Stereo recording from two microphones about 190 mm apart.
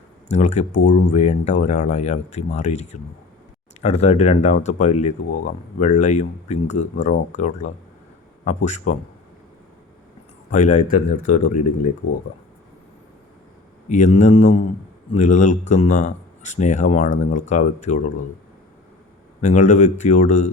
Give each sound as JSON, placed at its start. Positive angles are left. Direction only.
{"t": 0.3, "sound": "speech", "side_deg": 40}
{"t": 10.5, "sound": "speech", "side_deg": 40}
{"t": 13.8, "sound": "speech", "side_deg": 40}
{"t": 19.4, "sound": "speech", "side_deg": 40}